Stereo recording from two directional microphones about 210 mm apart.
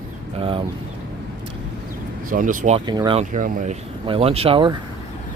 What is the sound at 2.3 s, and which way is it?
Speech, 40° right (ahead or behind).